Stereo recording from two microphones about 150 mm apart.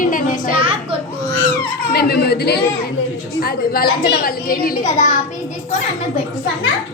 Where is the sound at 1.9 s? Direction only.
90° left; by 5.1 s 65° left (ahead or behind).